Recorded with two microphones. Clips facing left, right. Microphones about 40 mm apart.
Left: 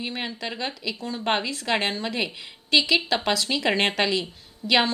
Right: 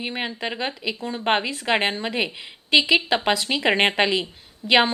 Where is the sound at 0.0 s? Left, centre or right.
Right.